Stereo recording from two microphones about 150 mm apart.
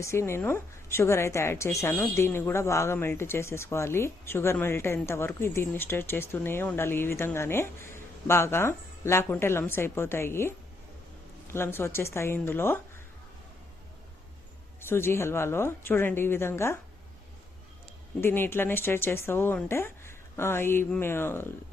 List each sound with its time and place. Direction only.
0.0 s speech: 20° left (ahead or behind)
14.8 s speech: 15° left (ahead or behind)
18.2 s speech: 15° left (ahead or behind)